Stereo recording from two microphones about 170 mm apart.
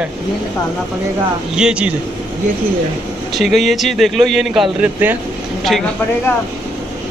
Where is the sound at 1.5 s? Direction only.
5° right (ahead or behind).